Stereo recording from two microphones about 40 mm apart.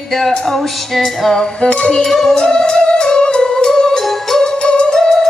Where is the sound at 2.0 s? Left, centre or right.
Centre.